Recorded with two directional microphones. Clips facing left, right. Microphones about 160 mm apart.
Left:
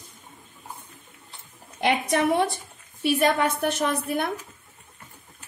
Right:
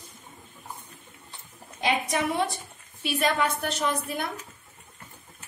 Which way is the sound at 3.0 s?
50° left (ahead or behind).